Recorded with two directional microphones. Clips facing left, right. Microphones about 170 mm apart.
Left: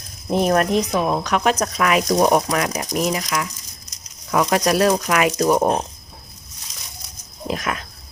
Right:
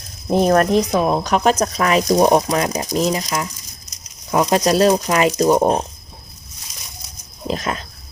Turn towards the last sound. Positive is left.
turn(degrees=-30)  # may be behind; listen again after turning